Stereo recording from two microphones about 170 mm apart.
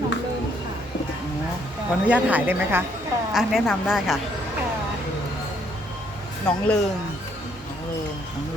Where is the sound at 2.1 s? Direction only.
10° right (ahead or behind).